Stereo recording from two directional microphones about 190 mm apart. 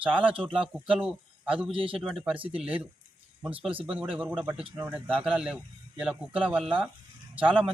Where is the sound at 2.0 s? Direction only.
Centre (ahead or behind).